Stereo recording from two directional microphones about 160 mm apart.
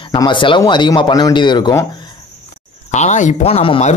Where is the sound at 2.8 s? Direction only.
50° left (ahead or behind).